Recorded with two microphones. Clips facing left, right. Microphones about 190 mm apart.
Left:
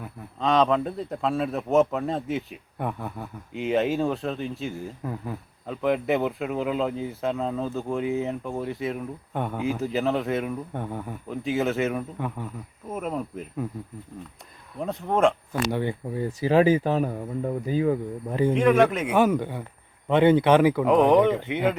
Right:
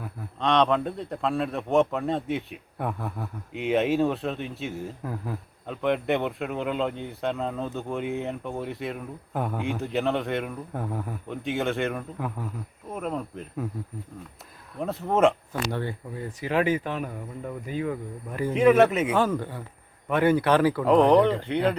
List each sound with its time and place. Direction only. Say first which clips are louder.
0.0 s a man's voice: left 1 dB; centre (ahead or behind)
14.8 s a man's voice: even; centre (ahead or behind)
15.7 s speech: left 4 dB; 20° left (ahead or behind)
16.4 s speech: left 5 dB; 30° left (ahead or behind)
18.5 s speech: right 3 dB; 5° right (ahead or behind)
19.1 s speech: left 3 dB; 15° left (ahead or behind)
20.8 s a man's voice: even; centre (ahead or behind)
21.2 s speech: left 1 dB; 20° left (ahead or behind)